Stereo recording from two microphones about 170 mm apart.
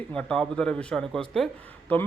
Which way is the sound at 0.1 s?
5° left (ahead or behind).